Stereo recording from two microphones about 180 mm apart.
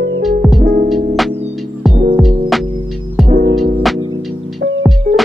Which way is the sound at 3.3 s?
55° right (ahead or behind).